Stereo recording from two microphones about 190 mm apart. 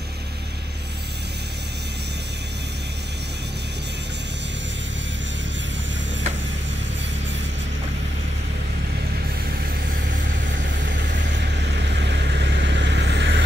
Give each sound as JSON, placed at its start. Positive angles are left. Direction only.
{"t": 10.9, "sound": "vehicle", "side_deg": -70}